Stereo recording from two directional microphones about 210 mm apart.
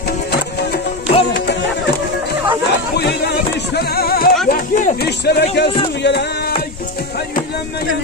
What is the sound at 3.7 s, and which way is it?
Music, 50° left (ahead or behind).